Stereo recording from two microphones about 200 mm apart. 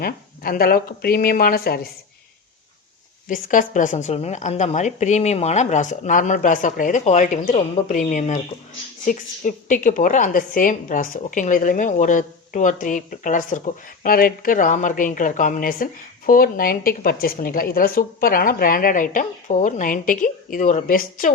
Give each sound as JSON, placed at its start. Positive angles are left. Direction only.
{"t": 0.0, "sound": "speech", "side_deg": 50}
{"t": 3.2, "sound": "a woman's voice", "side_deg": 40}